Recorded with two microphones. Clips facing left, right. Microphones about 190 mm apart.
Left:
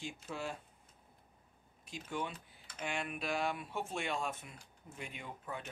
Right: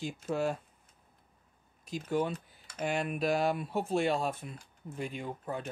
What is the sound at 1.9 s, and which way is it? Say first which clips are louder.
Speech: right 9 dB; 40° right (ahead or behind).